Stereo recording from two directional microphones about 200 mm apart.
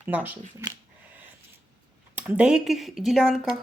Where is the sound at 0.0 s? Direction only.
10° right (ahead or behind).